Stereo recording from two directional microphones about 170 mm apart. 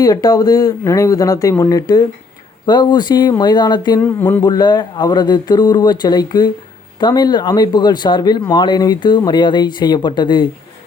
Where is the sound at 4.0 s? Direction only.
10° left (ahead or behind).